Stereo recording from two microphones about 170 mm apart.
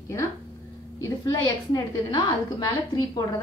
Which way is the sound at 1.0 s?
20° left (ahead or behind).